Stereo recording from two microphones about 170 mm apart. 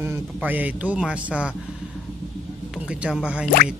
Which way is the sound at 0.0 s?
10° right (ahead or behind).